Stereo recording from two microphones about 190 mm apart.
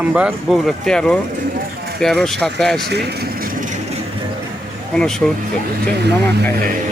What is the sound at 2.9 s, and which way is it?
Vehicle, 60° right (ahead or behind).